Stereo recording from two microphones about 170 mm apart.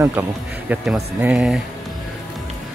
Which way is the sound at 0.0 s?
10° right (ahead or behind).